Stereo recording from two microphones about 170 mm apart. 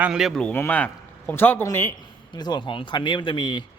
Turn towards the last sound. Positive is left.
turn(degrees=30)  # may be behind; listen again after turning